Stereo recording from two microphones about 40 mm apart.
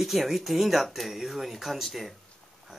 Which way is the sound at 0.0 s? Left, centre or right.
Centre.